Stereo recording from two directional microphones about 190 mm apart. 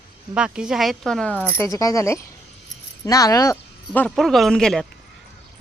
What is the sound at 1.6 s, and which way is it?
Speech, 15° left (ahead or behind).